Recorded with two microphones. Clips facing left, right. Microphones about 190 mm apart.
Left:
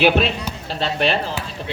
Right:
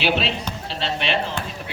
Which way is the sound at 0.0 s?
50° left (ahead or behind).